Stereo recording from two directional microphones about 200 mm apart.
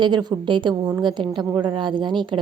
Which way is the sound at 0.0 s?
20° right (ahead or behind).